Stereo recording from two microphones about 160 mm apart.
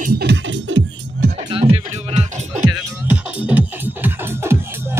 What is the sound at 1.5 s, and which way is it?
Music, 40° right (ahead or behind).